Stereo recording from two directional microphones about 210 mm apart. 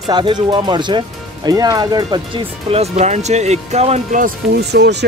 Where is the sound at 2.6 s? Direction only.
30° right (ahead or behind).